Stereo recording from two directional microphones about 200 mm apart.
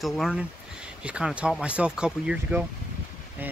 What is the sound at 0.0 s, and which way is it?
Speech, centre (ahead or behind).